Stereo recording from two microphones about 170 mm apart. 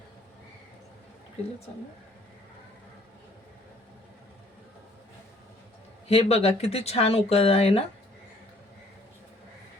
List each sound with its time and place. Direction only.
6.1 s speech: 35° left (ahead or behind)